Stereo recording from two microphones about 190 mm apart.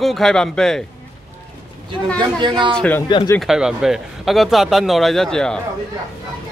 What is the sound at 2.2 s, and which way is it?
Speech, 25° right (ahead or behind).